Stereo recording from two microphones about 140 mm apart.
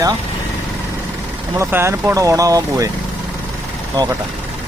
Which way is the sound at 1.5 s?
20° right (ahead or behind).